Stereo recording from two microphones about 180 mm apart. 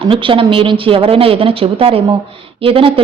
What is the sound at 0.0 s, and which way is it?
A woman's voice, 30° right (ahead or behind).